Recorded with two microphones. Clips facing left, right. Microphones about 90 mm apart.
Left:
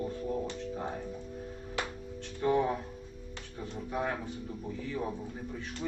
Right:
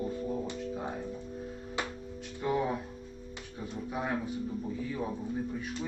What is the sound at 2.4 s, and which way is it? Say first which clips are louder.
Speech: left 3 dB; 5° right (ahead or behind).